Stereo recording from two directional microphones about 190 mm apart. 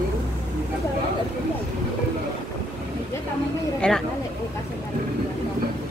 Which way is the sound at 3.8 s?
Centre (ahead or behind).